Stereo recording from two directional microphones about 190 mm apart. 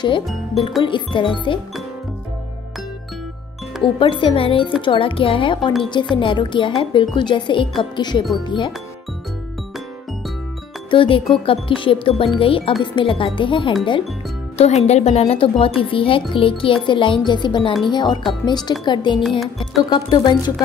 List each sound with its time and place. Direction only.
0.8 s speech: 25° left (ahead or behind)
3.8 s speech: 25° left (ahead or behind)
10.9 s speech: 25° left (ahead or behind)